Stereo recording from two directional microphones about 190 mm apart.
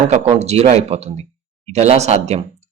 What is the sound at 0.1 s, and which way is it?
Speech, 35° right (ahead or behind).